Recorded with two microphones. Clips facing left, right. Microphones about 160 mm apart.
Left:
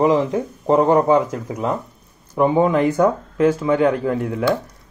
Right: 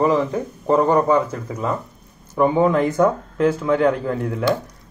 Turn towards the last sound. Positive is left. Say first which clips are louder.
# left 1 dB
turn(degrees=5)  # may be behind; listen again after turning